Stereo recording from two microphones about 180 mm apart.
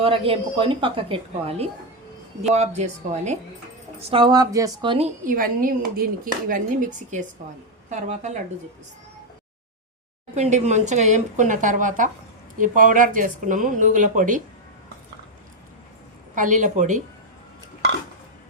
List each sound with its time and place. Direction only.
0.0 s a woman's voice: 30° right (ahead or behind)
4.1 s speech: 25° right (ahead or behind)
10.3 s speech: 35° right (ahead or behind)
16.3 s speech: 45° right (ahead or behind)